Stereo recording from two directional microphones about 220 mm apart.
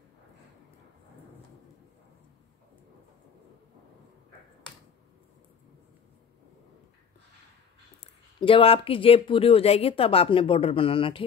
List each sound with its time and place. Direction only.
8.0 s speech: 25° left (ahead or behind)